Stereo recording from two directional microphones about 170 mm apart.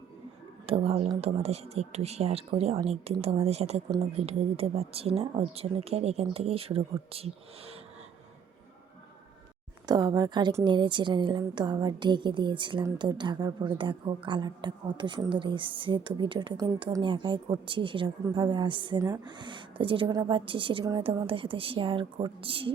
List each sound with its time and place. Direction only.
0.7 s speech: 35° right (ahead or behind)
9.8 s a woman's voice: 25° right (ahead or behind)